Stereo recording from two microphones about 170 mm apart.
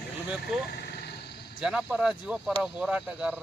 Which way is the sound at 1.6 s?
5° right (ahead or behind).